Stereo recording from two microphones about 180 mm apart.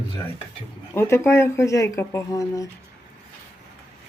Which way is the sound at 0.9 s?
15° left (ahead or behind).